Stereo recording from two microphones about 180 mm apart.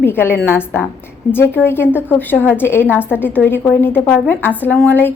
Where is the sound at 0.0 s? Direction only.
10° left (ahead or behind).